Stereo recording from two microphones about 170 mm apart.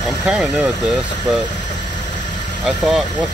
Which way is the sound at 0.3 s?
5° right (ahead or behind).